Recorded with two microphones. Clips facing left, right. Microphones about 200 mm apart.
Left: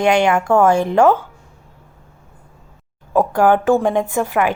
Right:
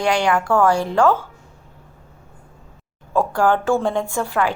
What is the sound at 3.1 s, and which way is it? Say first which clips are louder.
A woman's voice: left 4 dB; 20° left (ahead or behind).